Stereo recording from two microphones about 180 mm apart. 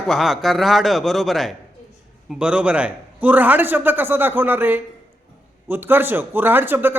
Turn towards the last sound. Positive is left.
turn(degrees=-10)  # may be behind; listen again after turning